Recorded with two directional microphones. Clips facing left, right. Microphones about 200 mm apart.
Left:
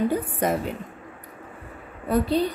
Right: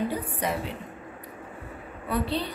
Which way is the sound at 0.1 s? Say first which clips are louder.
Left 6 dB; 50° left (ahead or behind).